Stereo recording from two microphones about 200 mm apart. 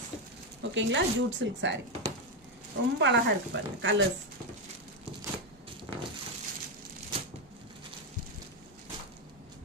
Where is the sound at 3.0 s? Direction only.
60° right (ahead or behind).